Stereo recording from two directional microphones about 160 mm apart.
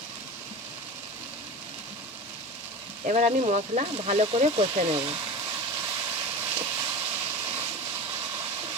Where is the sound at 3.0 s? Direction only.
45° right (ahead or behind).